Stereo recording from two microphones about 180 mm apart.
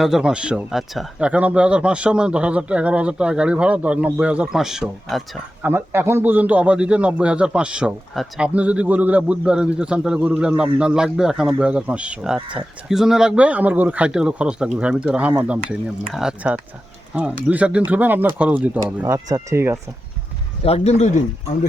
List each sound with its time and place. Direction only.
0.0 s speech: 5° right (ahead or behind)
5.6 s a man's voice: 10° right (ahead or behind)
20.7 s speech: 35° left (ahead or behind)